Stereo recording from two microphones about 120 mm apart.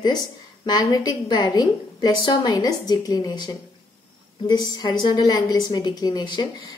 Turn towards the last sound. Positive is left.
turn(degrees=40)  # may be behind; listen again after turning